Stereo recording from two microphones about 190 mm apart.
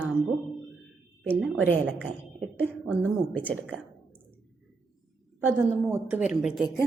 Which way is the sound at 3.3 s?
10° left (ahead or behind).